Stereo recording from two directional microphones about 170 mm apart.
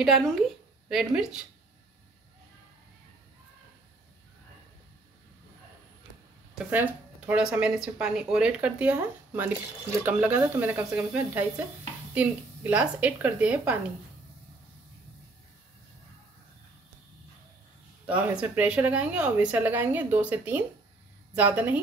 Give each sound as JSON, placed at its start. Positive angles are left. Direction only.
{"t": 0.0, "sound": "a woman's voice", "side_deg": 0}
{"t": 6.7, "sound": "speech", "side_deg": -10}
{"t": 18.0, "sound": "speech", "side_deg": -10}